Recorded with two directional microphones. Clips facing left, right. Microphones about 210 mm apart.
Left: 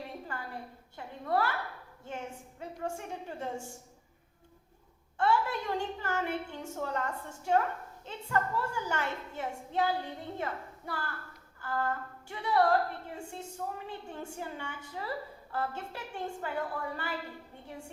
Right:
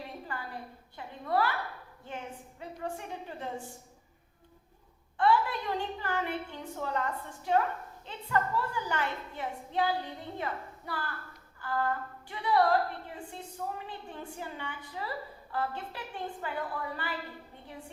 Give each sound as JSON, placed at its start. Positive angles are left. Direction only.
{"t": 0.0, "sound": "a sound", "side_deg": 45}
{"t": 2.0, "sound": "a woman's voice", "side_deg": 45}
{"t": 5.1, "sound": "a woman's voice", "side_deg": 45}